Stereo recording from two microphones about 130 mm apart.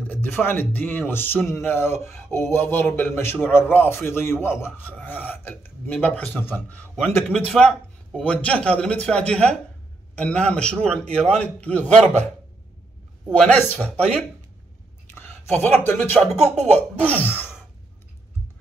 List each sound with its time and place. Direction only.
0.0 s speech: 15° left (ahead or behind)
13.3 s speech: 10° left (ahead or behind)